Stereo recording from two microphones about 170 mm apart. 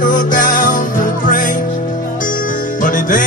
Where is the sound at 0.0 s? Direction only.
50° left (ahead or behind).